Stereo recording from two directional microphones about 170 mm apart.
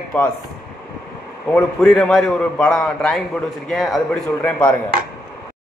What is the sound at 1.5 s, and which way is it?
A man's voice, 5° left (ahead or behind).